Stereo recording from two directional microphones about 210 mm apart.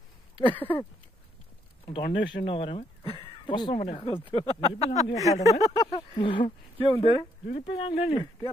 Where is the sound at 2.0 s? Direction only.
60° left (ahead or behind).